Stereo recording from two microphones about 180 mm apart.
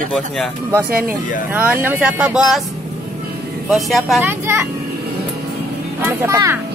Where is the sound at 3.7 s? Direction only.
Centre (ahead or behind).